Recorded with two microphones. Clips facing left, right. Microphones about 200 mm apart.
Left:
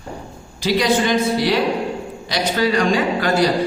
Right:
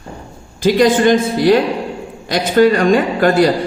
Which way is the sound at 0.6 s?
50° right (ahead or behind).